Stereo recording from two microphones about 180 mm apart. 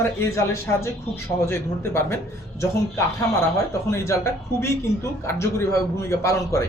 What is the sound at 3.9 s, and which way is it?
Speech, 15° left (ahead or behind).